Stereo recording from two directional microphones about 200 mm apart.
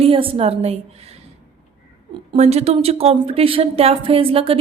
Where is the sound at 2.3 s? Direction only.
35° right (ahead or behind).